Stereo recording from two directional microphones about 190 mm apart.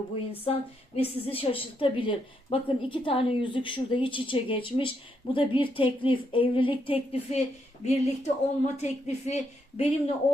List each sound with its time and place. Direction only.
0.3 s a woman's voice: 30° left (ahead or behind)